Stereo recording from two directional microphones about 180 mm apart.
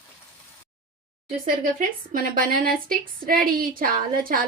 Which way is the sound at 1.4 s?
50° right (ahead or behind).